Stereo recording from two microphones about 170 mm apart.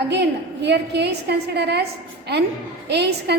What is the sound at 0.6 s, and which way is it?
A woman's voice, 80° right.